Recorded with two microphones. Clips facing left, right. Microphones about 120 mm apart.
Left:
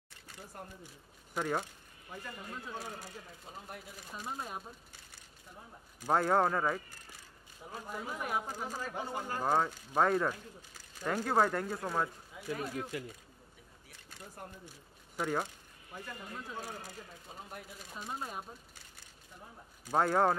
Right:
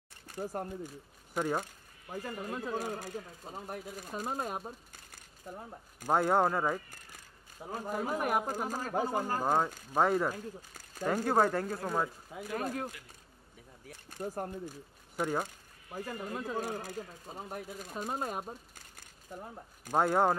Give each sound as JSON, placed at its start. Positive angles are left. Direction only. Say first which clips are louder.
{"t": 0.3, "sound": "speech", "louder": "right 11 dB", "side_deg": -50}
{"t": 1.3, "sound": "speech", "louder": "right 2 dB", "side_deg": -5}
{"t": 1.6, "sound": "speech", "louder": "right 2 dB", "side_deg": -40}
{"t": 6.0, "sound": "speech", "louder": "right 1 dB", "side_deg": -5}
{"t": 7.7, "sound": "speech", "louder": "right 7 dB", "side_deg": -45}
{"t": 9.4, "sound": "speech", "louder": "left 3 dB", "side_deg": -10}
{"t": 10.3, "sound": "speech", "louder": "right 7 dB", "side_deg": -45}
{"t": 11.2, "sound": "speech", "louder": "right 1 dB", "side_deg": -5}
{"t": 12.3, "sound": "speech", "louder": "right 3 dB", "side_deg": -45}
{"t": 14.1, "sound": "speech", "louder": "right 11 dB", "side_deg": -50}
{"t": 15.1, "sound": "speech", "louder": "right 2 dB", "side_deg": -10}
{"t": 15.4, "sound": "speech", "louder": "right 2 dB", "side_deg": -40}
{"t": 19.9, "sound": "speech", "louder": "right 1 dB", "side_deg": 0}